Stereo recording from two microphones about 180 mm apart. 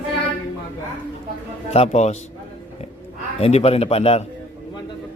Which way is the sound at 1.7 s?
35° left (ahead or behind).